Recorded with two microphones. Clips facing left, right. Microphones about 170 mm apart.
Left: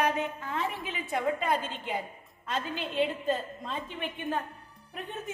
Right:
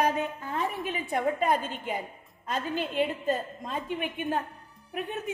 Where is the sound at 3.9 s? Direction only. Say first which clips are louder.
Right 5 dB; 10° right (ahead or behind).